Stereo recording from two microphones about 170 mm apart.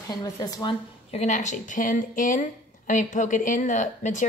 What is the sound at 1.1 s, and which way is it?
A woman's voice, 45° left (ahead or behind).